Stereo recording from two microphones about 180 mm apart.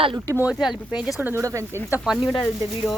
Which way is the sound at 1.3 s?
15° right (ahead or behind).